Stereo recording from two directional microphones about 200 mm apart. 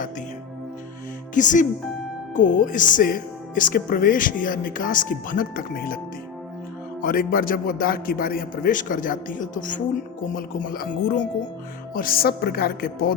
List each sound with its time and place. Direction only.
1.3 s a man's voice: 40° left (ahead or behind)
7.0 s a man's voice: 45° left (ahead or behind)